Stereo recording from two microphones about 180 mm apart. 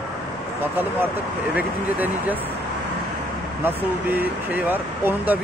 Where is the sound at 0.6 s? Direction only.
10° right (ahead or behind).